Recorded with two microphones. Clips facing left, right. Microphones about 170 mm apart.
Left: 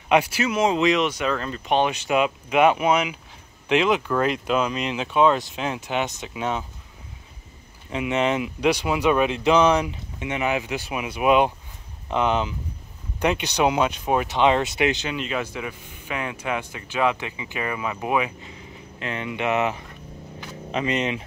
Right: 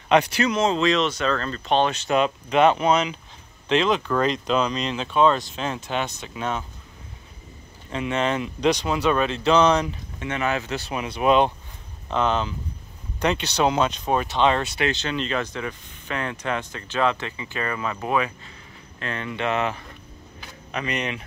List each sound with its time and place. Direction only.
0.1 s speech: 5° left (ahead or behind)
7.9 s speech: 15° left (ahead or behind)